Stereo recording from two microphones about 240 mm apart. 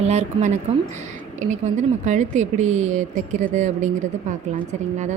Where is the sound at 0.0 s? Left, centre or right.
Right.